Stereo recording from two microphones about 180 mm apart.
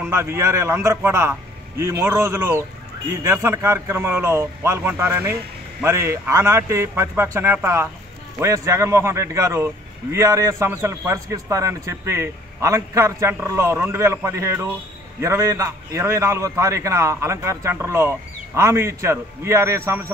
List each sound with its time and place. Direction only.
0.0 s a man's voice: 15° right (ahead or behind)